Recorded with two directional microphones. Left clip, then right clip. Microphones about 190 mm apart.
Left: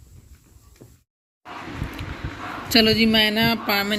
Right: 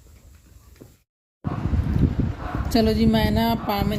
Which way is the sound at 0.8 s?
45° right (ahead or behind).